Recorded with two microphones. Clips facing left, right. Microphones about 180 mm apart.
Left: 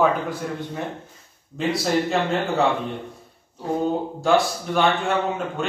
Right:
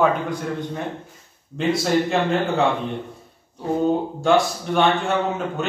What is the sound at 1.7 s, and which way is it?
Speech, centre (ahead or behind).